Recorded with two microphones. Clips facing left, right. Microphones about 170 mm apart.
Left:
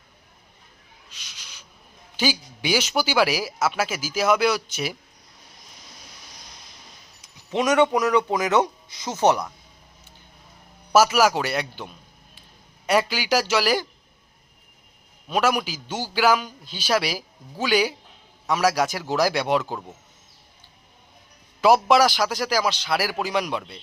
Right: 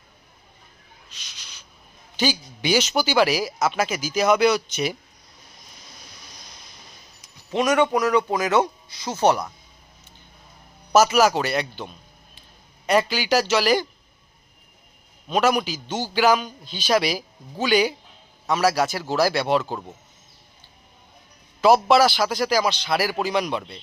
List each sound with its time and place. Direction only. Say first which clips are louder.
1.1 s a sound: left 1 dB; 10° left (ahead or behind)
2.1 s speech: right 1 dB; 10° left (ahead or behind)
7.3 s a man's voice: even; 20° left (ahead or behind)
10.9 s speech: right 1 dB; 10° left (ahead or behind)
15.3 s speech: right 2 dB; 10° left (ahead or behind)
21.6 s speech: right 1 dB; 10° left (ahead or behind)